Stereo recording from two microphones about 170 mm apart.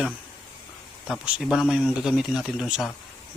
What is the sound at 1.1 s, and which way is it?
Speech, 5° right (ahead or behind).